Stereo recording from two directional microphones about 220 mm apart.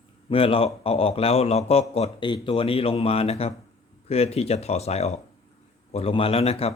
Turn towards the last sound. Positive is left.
turn(degrees=25)  # may be behind; listen again after turning